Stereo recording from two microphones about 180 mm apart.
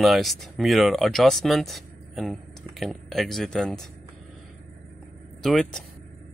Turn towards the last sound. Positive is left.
turn(degrees=0)  # may be behind; listen again after turning